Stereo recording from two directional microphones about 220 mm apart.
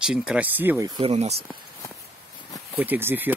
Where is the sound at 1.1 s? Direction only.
30° right (ahead or behind).